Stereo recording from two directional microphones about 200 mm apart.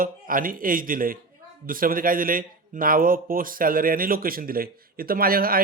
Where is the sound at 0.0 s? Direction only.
45° right (ahead or behind).